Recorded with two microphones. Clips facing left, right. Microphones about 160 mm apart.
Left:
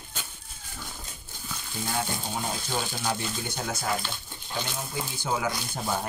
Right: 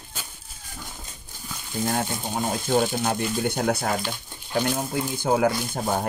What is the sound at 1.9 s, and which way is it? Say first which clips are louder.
Speech: right 2 dB; 50° right (ahead or behind).